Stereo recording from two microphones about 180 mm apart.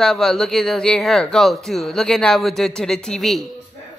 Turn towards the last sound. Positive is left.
turn(degrees=0)  # may be behind; listen again after turning